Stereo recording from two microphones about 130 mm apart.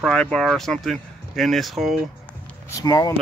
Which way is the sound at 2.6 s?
25° left (ahead or behind).